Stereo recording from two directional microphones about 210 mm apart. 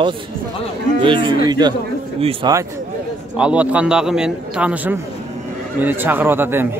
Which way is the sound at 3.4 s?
5° right (ahead or behind).